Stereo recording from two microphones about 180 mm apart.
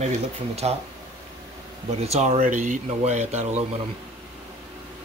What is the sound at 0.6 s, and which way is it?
Speech, 35° right (ahead or behind).